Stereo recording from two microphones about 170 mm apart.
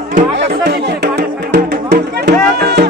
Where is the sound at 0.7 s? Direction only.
75° right (ahead or behind).